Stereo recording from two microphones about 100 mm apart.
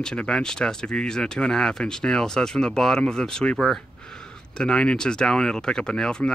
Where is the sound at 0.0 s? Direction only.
5° left (ahead or behind).